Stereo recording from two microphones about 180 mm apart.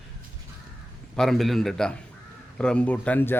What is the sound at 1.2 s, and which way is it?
Speech, centre (ahead or behind).